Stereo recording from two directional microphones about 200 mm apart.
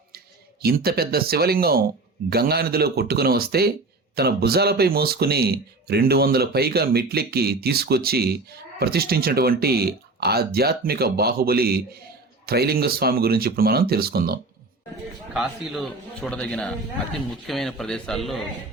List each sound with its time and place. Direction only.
0.6 s speech: 50° right (ahead or behind)
15.3 s a man's voice: centre (ahead or behind)